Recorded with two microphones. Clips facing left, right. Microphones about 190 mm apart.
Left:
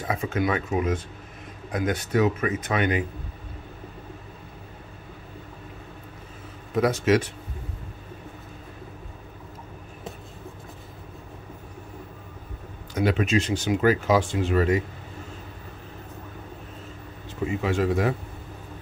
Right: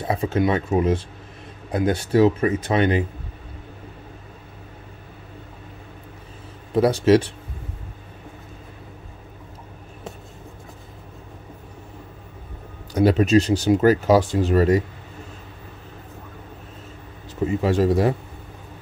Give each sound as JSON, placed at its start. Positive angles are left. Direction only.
{"t": 0.0, "sound": "speech", "side_deg": -30}
{"t": 6.7, "sound": "speech", "side_deg": -30}
{"t": 12.9, "sound": "speech", "side_deg": -35}
{"t": 17.6, "sound": "speech", "side_deg": -35}